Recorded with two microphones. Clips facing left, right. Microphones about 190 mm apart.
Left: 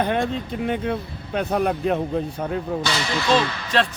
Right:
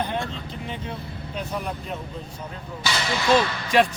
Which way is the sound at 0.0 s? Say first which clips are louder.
Left 6 dB; 60° left (ahead or behind).